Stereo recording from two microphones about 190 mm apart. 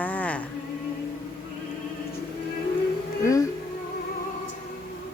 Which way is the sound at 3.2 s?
15° left (ahead or behind).